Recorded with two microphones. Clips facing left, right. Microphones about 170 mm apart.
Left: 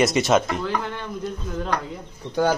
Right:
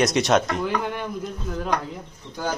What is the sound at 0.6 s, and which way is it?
Speech, 15° right (ahead or behind).